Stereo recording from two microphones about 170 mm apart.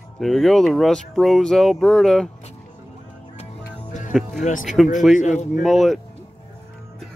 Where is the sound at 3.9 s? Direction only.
45° left (ahead or behind).